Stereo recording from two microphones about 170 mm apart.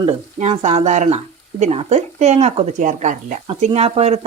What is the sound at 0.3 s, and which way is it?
Speech, 40° right (ahead or behind).